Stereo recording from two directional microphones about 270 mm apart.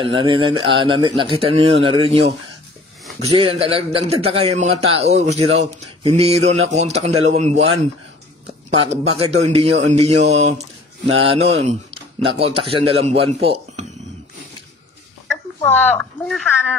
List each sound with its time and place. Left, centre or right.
0.0 s speech: centre
3.3 s speech: centre
8.6 s a sound: right
9.2 s speech: right
15.6 s speech: centre